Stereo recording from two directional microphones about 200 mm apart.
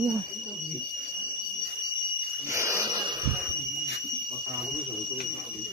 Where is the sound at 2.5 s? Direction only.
15° right (ahead or behind).